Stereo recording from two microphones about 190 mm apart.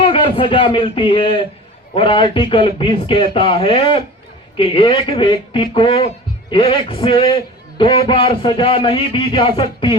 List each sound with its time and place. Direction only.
0.0 s a man's voice: 25° left (ahead or behind)